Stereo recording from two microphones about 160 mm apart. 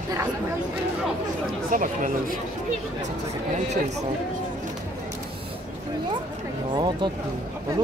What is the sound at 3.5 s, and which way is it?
Chatter, 45° right (ahead or behind).